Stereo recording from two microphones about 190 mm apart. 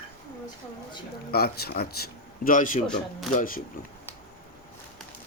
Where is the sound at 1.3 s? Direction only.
55° left (ahead or behind).